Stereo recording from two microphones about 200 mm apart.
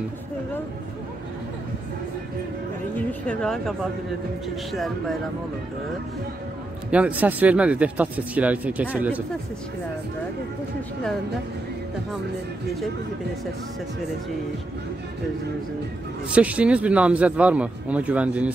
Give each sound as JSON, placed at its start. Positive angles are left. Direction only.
{"t": 3.0, "sound": "speech", "side_deg": 5}
{"t": 4.7, "sound": "speech", "side_deg": 0}
{"t": 6.9, "sound": "speech", "side_deg": -5}
{"t": 16.3, "sound": "speech", "side_deg": -5}